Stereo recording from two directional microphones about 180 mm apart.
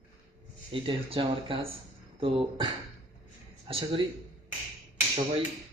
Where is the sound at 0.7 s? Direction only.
30° right (ahead or behind).